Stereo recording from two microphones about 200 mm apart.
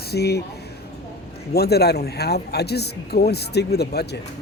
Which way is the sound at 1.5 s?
55° left (ahead or behind).